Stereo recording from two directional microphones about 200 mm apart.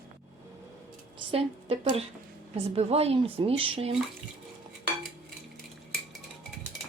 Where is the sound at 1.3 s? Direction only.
30° right (ahead or behind).